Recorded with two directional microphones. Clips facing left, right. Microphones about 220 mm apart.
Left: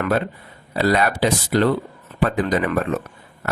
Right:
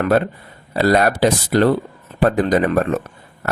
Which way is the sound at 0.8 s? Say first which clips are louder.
Right 4 dB; 45° right (ahead or behind).